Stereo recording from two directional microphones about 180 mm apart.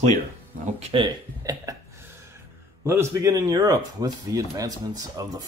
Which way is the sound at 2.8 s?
15° right (ahead or behind).